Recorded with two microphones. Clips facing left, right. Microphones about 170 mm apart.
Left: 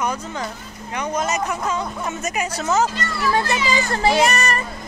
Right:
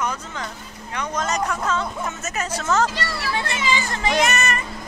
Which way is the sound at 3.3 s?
40° left (ahead or behind).